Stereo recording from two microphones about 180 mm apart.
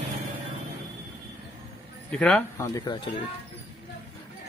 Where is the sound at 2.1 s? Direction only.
5° left (ahead or behind); by 3.1 s 25° left (ahead or behind).